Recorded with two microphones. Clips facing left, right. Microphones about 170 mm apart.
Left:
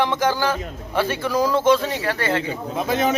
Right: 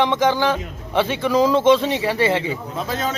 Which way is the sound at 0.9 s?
20° right (ahead or behind).